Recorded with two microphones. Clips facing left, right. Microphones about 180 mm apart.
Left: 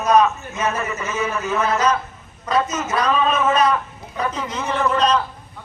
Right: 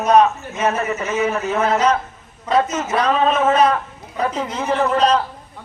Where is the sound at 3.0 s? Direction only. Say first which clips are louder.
Right 2 dB; 30° right (ahead or behind).